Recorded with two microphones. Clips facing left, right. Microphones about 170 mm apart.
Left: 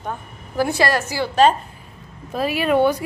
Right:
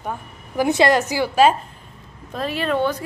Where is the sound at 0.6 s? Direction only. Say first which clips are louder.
Right 6 dB; 20° right (ahead or behind).